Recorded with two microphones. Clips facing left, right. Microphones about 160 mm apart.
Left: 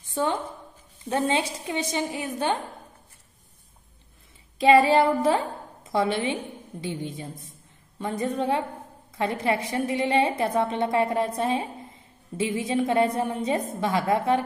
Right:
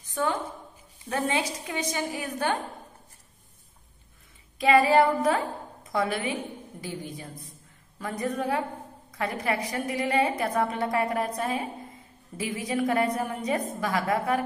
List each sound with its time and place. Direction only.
0.0 s a sound: 30° left (ahead or behind)
1.1 s a woman's voice: 30° left (ahead or behind)
4.6 s a woman's voice: 30° left (ahead or behind)